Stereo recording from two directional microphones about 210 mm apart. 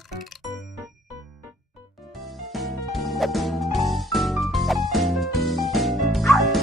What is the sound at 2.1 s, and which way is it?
Music, centre (ahead or behind).